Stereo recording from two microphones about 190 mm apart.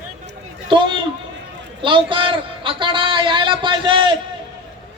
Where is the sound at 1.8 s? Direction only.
25° right (ahead or behind).